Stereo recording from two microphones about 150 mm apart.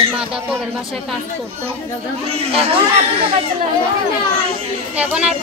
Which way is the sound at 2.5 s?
40° right (ahead or behind).